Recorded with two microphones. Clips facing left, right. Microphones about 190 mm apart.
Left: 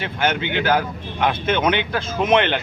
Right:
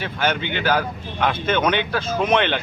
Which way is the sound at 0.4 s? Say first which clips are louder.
Left 2 dB; 15° left (ahead or behind).